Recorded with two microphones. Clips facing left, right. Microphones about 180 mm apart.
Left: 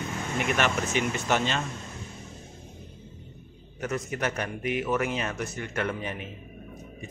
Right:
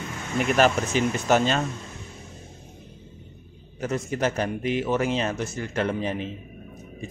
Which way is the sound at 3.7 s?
30° right (ahead or behind).